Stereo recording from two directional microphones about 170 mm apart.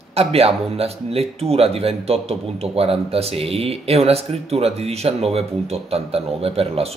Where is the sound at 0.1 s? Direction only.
35° right (ahead or behind).